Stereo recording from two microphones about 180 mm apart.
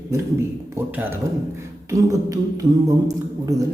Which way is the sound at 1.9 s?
20° right (ahead or behind).